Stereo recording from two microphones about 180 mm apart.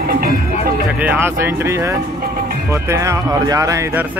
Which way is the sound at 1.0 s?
10° right (ahead or behind).